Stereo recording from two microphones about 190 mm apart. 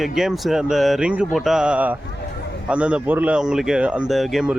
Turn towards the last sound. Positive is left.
turn(degrees=0)  # may be behind; listen again after turning